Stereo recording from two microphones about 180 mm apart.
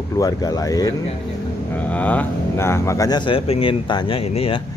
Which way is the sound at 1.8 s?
10° left (ahead or behind).